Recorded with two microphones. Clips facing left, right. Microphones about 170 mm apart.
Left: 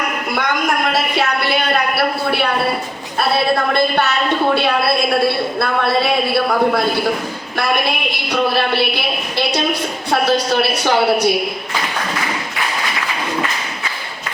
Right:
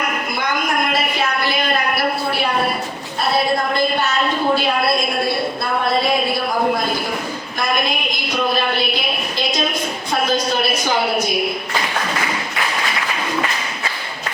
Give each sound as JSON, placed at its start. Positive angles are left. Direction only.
{"t": 0.9, "sound": "a sound", "side_deg": 70}
{"t": 3.8, "sound": "a woman's voice", "side_deg": 65}
{"t": 8.3, "sound": "a woman's voice", "side_deg": 70}
{"t": 10.1, "sound": "a woman's voice", "side_deg": 70}